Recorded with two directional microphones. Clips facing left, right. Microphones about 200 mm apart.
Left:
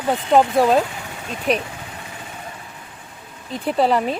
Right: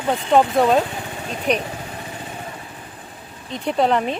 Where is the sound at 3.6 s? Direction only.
5° left (ahead or behind).